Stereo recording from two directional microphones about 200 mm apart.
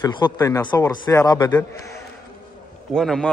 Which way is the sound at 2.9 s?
5° left (ahead or behind).